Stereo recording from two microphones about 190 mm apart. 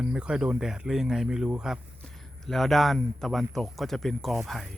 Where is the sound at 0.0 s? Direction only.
5° right (ahead or behind).